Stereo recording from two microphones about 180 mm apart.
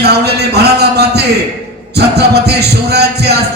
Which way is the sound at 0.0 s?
65° right (ahead or behind).